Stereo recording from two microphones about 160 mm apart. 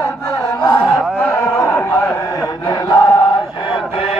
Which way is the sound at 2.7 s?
30° left (ahead or behind).